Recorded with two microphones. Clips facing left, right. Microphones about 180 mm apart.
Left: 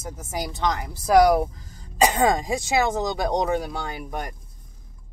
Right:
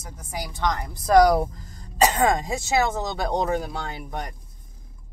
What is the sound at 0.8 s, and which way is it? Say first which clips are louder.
Speech: even; 5° left (ahead or behind).